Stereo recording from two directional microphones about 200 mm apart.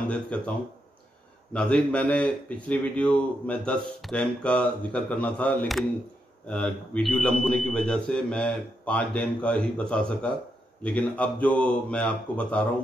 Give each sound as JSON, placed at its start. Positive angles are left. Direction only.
{"t": 0.3, "sound": "a man's voice", "side_deg": 5}
{"t": 1.5, "sound": "a man's voice", "side_deg": 5}